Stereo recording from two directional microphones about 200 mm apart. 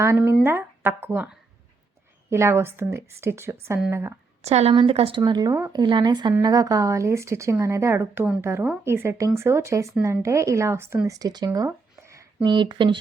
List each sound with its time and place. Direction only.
0.0 s a woman's voice: 15° right (ahead or behind)
4.4 s a woman's voice: 30° right (ahead or behind)